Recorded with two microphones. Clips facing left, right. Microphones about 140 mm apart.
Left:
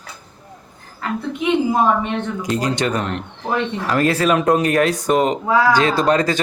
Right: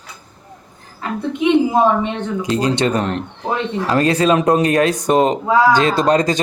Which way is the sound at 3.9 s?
25° right (ahead or behind).